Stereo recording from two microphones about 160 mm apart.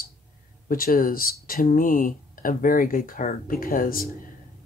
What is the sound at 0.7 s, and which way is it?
Speech, 65° left (ahead or behind).